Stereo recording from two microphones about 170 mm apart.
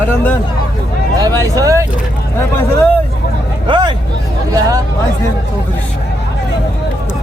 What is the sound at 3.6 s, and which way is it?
A man's voice, 25° right (ahead or behind).